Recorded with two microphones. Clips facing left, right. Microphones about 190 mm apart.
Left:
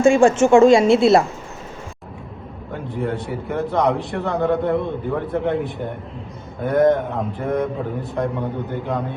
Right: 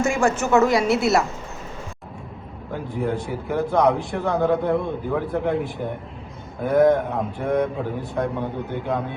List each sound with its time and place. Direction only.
0.0 s a woman's voice: 30° left (ahead or behind)
2.7 s a man's voice: centre (ahead or behind)